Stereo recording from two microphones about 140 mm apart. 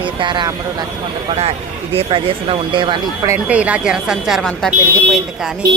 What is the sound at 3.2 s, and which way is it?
Speech, 10° right (ahead or behind).